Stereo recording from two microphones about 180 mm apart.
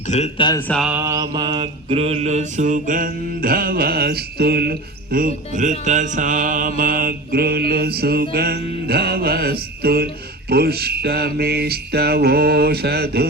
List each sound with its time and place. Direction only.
0.1 s speech: 40° left (ahead or behind)
0.7 s mantra: centre (ahead or behind)
0.9 s mantra: 15° right (ahead or behind); by 13.2 s 60° right (ahead or behind)